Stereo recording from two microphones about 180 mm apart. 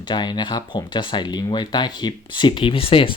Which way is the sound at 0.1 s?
25° left (ahead or behind).